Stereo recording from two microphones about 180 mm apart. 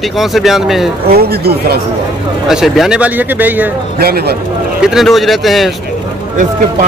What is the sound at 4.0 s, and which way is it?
Speech, 60° right (ahead or behind).